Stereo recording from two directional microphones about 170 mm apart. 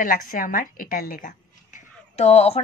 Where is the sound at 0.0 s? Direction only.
55° left (ahead or behind).